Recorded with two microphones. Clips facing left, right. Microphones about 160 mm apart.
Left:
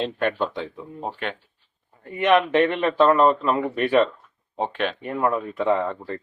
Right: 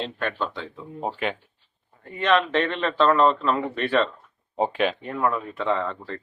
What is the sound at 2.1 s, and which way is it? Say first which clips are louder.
A man's voice: left 3 dB; 15° left (ahead or behind).